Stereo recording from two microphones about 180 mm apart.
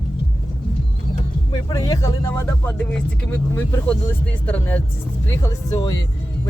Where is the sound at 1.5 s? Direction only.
20° left (ahead or behind).